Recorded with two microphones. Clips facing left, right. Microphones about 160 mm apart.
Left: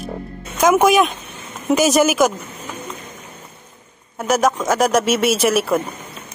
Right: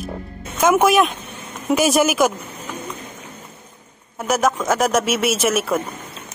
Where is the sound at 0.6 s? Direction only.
Centre (ahead or behind).